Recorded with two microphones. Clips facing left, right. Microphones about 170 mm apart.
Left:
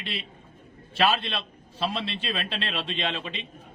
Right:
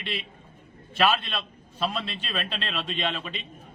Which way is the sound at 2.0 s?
30° left (ahead or behind).